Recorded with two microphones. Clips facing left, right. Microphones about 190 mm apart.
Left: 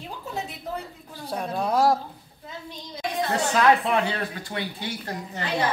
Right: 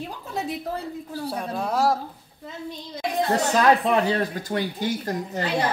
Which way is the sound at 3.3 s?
40° right (ahead or behind).